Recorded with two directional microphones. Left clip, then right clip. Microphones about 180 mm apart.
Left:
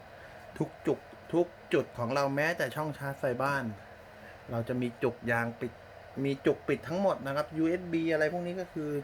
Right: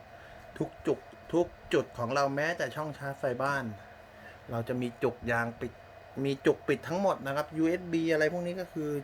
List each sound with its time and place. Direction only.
0.6 s speech: 15° left (ahead or behind)
1.3 s speech: 5° right (ahead or behind)
6.2 s speech: 10° right (ahead or behind)
7.7 s speech: 15° right (ahead or behind)